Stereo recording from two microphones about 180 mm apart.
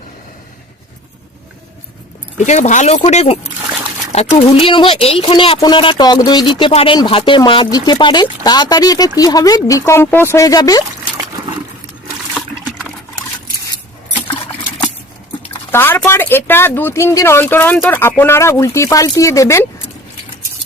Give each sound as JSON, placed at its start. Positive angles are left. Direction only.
{"t": 2.4, "sound": "speech", "side_deg": 40}
{"t": 15.7, "sound": "speech", "side_deg": 10}